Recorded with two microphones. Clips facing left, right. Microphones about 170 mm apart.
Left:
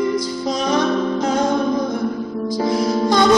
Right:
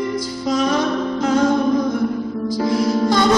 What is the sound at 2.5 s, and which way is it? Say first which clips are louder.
Music: even; 15° left (ahead or behind).